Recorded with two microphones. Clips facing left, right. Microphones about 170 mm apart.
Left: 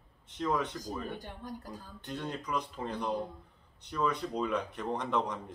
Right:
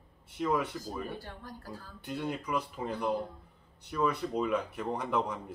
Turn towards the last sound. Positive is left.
turn(degrees=-5)  # may be behind; listen again after turning